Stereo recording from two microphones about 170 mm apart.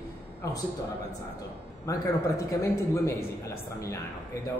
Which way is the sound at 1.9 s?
20° left (ahead or behind).